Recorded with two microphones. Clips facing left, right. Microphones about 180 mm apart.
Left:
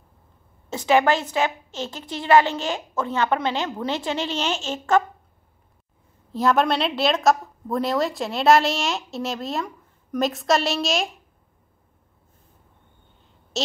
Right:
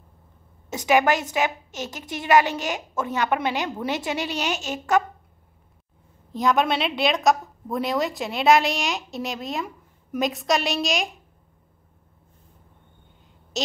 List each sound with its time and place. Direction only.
0.7 s a woman's voice: 15° right (ahead or behind)
6.3 s a woman's voice: centre (ahead or behind)